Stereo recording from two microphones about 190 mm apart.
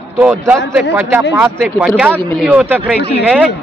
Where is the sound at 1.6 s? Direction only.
Centre (ahead or behind).